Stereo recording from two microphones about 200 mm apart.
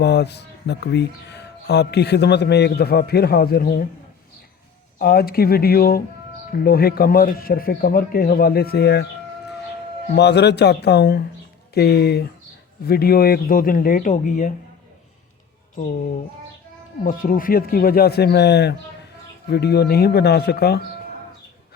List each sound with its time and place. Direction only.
0.0 s speech: 55° left (ahead or behind)
4.9 s speech: 50° left (ahead or behind)
10.2 s speech: 55° left (ahead or behind); by 14.5 s 40° left (ahead or behind)
17.0 s speech: 45° left (ahead or behind)